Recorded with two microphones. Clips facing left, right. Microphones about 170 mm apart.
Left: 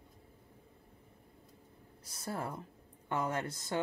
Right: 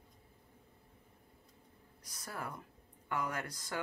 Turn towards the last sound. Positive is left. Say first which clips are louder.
# left 5 dB
turn(degrees=25)  # may be behind; listen again after turning